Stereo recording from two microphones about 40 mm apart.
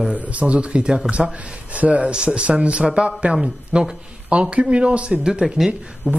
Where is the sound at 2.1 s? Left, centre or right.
Right.